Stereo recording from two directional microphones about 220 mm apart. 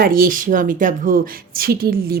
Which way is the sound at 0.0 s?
40° right (ahead or behind).